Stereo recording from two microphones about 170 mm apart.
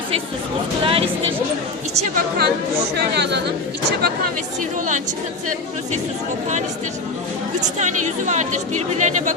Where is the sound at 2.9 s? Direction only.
75° right (ahead or behind).